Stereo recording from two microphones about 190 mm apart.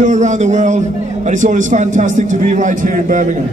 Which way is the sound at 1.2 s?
40° right (ahead or behind).